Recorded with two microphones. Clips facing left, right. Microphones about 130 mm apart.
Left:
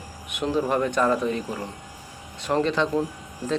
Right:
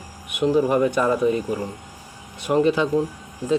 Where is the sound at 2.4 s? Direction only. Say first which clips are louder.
Right 4 dB; 10° right (ahead or behind).